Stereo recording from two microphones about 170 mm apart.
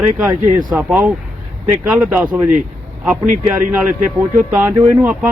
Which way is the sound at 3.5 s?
15° right (ahead or behind).